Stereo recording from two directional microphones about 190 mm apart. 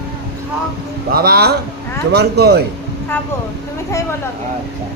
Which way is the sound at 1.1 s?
55° right (ahead or behind).